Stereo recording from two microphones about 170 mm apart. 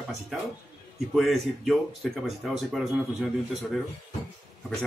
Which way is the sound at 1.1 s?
Centre (ahead or behind).